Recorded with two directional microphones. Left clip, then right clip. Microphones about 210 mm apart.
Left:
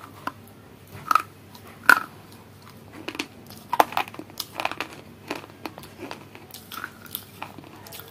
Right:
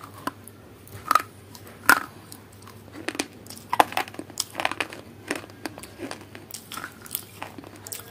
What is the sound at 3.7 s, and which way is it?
Crumpling, 15° right (ahead or behind).